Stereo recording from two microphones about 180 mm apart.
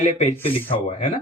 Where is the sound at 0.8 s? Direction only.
40° left (ahead or behind).